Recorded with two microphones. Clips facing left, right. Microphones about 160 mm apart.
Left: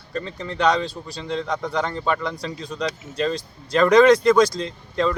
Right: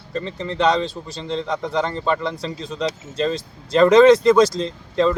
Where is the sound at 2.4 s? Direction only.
25° right (ahead or behind).